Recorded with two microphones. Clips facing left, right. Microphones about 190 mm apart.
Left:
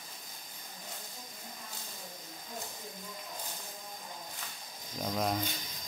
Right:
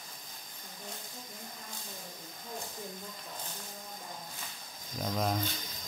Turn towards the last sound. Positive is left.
turn(degrees=0)  # may be behind; listen again after turning